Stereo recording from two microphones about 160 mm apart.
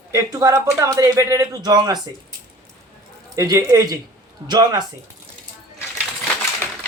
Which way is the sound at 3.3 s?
20° right (ahead or behind).